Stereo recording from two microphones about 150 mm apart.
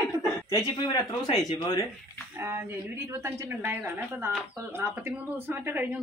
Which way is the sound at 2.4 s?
20° right (ahead or behind).